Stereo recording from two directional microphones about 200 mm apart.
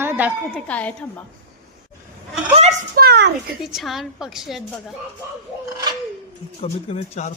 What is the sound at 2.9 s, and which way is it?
Speech, 50° right (ahead or behind).